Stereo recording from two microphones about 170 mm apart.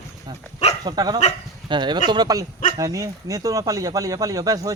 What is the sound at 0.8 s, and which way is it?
Speech, 25° right (ahead or behind).